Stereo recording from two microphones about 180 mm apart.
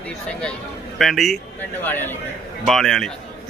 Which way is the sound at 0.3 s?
5° left (ahead or behind).